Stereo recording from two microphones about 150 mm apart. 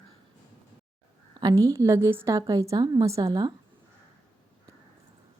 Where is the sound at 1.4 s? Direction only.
25° right (ahead or behind).